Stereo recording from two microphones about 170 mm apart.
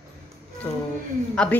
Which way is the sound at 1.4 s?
5° left (ahead or behind).